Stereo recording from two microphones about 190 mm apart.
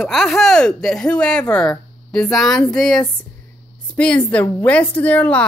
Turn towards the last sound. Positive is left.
turn(degrees=10)  # may be behind; listen again after turning